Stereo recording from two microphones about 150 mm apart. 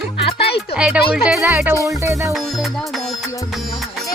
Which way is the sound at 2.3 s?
Centre (ahead or behind).